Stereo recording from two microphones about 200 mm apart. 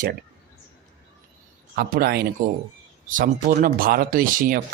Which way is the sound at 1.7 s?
50° right (ahead or behind).